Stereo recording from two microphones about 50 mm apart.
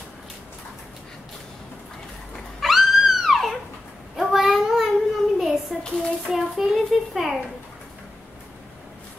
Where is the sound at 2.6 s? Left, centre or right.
Centre.